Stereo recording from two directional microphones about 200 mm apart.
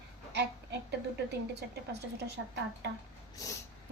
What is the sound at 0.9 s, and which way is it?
Speech, 55° right (ahead or behind).